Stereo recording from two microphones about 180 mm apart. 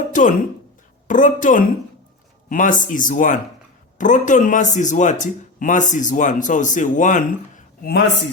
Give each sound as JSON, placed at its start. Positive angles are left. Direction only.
{"t": 0.1, "sound": "speech", "side_deg": 45}